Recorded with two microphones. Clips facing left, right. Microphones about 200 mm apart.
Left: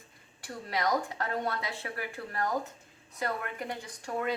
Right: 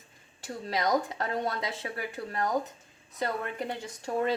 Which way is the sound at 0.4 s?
20° right (ahead or behind).